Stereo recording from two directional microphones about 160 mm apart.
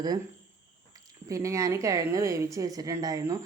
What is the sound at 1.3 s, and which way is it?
A woman's voice, 20° right (ahead or behind).